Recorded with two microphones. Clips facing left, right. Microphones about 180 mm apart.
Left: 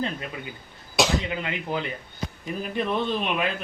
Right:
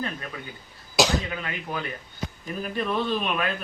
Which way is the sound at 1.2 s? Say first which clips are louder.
Left 3 dB; 20° left (ahead or behind).